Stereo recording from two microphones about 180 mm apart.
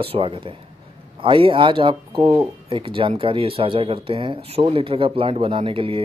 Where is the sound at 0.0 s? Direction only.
30° right (ahead or behind).